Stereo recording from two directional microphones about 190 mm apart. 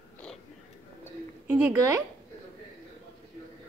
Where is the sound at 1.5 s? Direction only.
15° right (ahead or behind).